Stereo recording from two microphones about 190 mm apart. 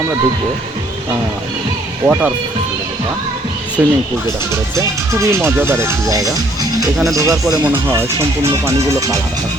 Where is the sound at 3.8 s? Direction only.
5° right (ahead or behind).